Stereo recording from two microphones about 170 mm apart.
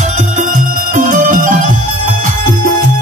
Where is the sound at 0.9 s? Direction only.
50° right (ahead or behind).